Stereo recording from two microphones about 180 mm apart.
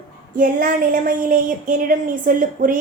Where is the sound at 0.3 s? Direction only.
50° right (ahead or behind).